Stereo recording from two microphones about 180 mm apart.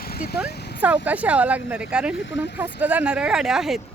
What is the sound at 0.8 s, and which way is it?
Speech, 10° right (ahead or behind).